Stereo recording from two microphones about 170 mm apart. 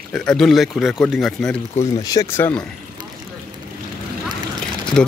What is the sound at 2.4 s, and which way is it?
Speech, 10° left (ahead or behind).